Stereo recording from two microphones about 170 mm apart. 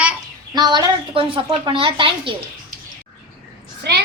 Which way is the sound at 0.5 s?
25° right (ahead or behind).